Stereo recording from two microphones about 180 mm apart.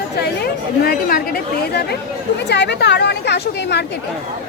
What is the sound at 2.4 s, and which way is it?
Speech, 70° left (ahead or behind).